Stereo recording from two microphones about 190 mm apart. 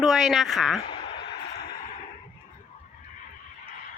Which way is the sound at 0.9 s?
25° left (ahead or behind).